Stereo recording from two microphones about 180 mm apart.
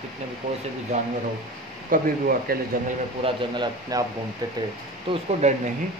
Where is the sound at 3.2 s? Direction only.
25° right (ahead or behind).